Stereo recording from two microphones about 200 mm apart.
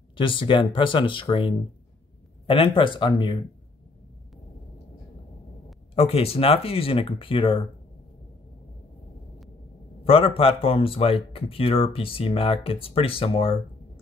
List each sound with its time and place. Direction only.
0.2 s speech: 25° left (ahead or behind)
5.9 s speech: 30° left (ahead or behind)
10.0 s speech: 30° left (ahead or behind)